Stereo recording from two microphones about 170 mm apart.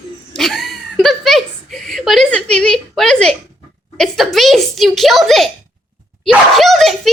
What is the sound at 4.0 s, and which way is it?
A woman's voice, centre (ahead or behind).